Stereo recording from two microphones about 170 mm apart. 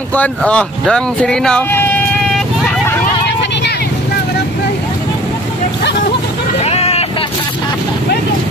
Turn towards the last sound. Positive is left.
turn(degrees=35)  # may be behind; listen again after turning